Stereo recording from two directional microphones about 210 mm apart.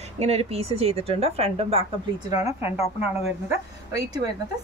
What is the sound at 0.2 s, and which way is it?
Speech, 30° right (ahead or behind).